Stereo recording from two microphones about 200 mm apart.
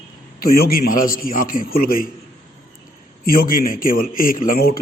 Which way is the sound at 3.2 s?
45° left (ahead or behind).